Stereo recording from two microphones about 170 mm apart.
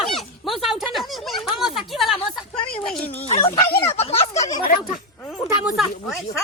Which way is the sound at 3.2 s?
35° left (ahead or behind).